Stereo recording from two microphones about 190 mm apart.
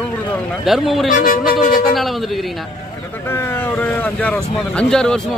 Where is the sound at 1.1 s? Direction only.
45° left (ahead or behind).